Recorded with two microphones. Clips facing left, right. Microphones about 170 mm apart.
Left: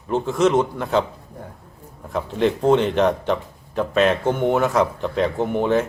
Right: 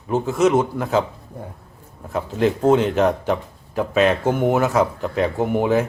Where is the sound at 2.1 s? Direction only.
5° right (ahead or behind).